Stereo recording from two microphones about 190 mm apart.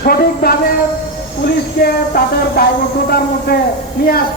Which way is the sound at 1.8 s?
50° left (ahead or behind).